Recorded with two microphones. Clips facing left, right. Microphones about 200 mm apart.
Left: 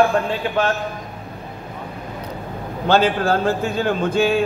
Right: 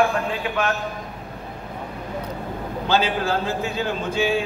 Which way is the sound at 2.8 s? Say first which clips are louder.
Left 5 dB; 50° left (ahead or behind).